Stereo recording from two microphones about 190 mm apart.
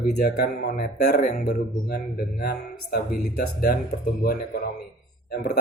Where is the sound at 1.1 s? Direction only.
40° left (ahead or behind).